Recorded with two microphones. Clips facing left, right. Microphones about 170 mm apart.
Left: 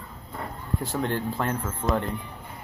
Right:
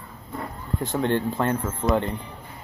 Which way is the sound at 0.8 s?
Centre (ahead or behind).